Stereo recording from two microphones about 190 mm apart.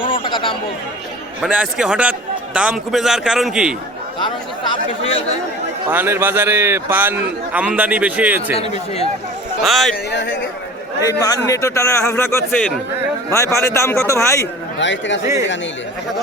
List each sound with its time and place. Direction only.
0.0 s a sound: 25° left (ahead or behind)
1.4 s a man's voice: 5° right (ahead or behind)
5.9 s a man's voice: 10° right (ahead or behind)
8.5 s speech: 35° left (ahead or behind)
9.6 s a man's voice: centre (ahead or behind)
11.2 s a man's voice: 15° left (ahead or behind)
14.8 s speech: 75° left (ahead or behind)